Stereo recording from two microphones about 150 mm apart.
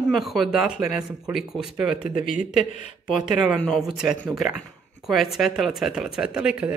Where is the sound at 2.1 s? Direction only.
60° left (ahead or behind).